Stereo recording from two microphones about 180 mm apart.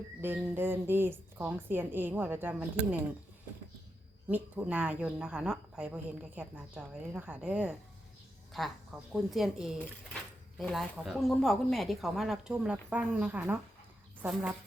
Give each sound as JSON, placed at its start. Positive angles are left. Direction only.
{"t": 0.2, "sound": "a woman's voice", "side_deg": -10}
{"t": 4.5, "sound": "a woman's voice", "side_deg": -5}
{"t": 9.1, "sound": "a woman's voice", "side_deg": 0}